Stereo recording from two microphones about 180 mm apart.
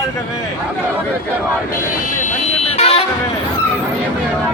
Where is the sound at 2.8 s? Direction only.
30° left (ahead or behind).